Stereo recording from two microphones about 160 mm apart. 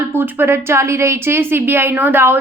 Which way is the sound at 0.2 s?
15° right (ahead or behind).